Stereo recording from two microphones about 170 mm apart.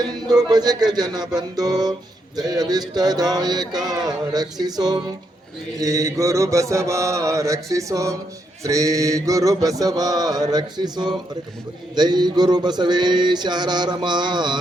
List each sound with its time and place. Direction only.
0.0 s music: 25° right (ahead or behind)